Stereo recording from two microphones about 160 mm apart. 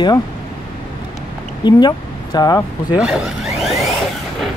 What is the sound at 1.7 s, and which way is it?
Speech, 25° left (ahead or behind).